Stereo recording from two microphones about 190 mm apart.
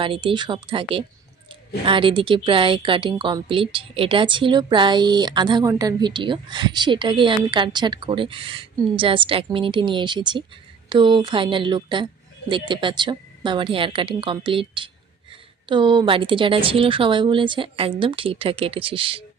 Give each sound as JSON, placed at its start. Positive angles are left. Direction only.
{"t": 0.0, "sound": "a woman's voice", "side_deg": -25}